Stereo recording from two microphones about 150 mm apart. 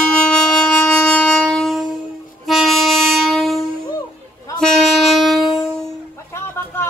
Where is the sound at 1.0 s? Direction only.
5° left (ahead or behind).